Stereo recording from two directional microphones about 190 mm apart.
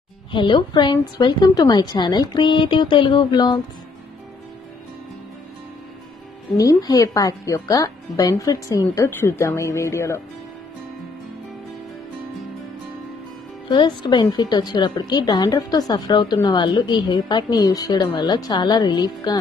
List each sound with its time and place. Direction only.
0.3 s a woman's voice: 25° left (ahead or behind)
6.5 s a woman's voice: 20° left (ahead or behind)
13.7 s a woman's voice: 25° left (ahead or behind)